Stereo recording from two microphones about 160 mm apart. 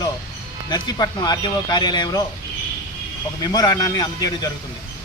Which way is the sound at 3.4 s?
25° left (ahead or behind).